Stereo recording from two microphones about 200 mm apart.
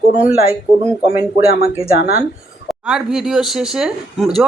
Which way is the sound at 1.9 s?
50° left (ahead or behind).